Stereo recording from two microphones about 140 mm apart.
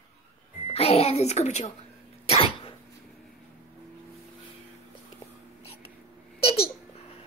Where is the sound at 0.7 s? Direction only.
45° left (ahead or behind).